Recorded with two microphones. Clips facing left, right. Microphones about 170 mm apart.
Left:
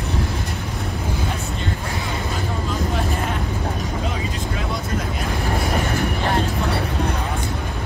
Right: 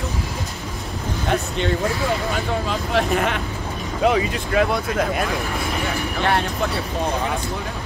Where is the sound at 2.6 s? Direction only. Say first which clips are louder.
Right 2 dB; 80° right.